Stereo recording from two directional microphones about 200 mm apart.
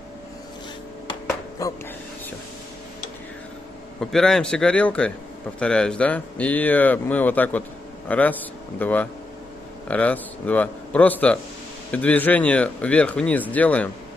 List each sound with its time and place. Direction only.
1.6 s speech: 15° left (ahead or behind)
4.0 s a man's voice: centre (ahead or behind)